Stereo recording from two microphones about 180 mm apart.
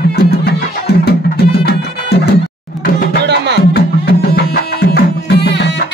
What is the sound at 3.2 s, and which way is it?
Music, 70° right (ahead or behind).